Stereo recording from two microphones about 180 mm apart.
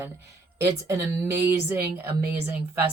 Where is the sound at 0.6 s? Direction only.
15° right (ahead or behind).